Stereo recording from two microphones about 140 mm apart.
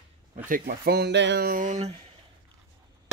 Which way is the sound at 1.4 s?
75° right (ahead or behind).